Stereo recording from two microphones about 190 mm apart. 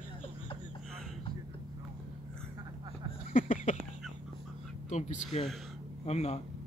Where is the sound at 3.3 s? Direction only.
45° left (ahead or behind).